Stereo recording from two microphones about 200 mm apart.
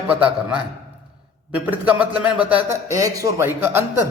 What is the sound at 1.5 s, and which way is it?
A man's voice, 5° right (ahead or behind).